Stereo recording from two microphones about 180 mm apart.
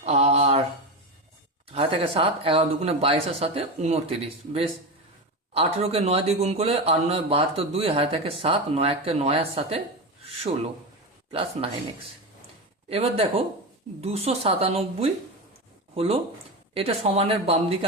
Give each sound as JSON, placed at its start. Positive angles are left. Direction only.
{"t": 0.0, "sound": "a sound", "side_deg": -35}
{"t": 1.7, "sound": "speech", "side_deg": -30}
{"t": 11.3, "sound": "speech", "side_deg": -30}
{"t": 12.9, "sound": "speech", "side_deg": -35}
{"t": 16.7, "sound": "speech", "side_deg": -35}